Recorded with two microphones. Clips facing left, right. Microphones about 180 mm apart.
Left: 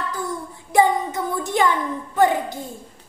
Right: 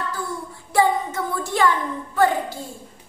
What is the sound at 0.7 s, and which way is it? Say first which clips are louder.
Speech: left 2 dB; 20° left (ahead or behind).